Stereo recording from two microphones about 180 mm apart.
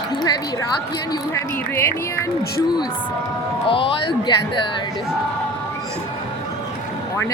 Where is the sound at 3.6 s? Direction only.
30° left (ahead or behind).